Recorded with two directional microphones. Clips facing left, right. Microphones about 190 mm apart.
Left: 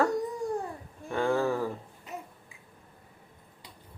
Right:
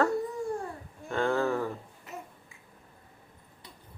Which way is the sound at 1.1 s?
15° left (ahead or behind).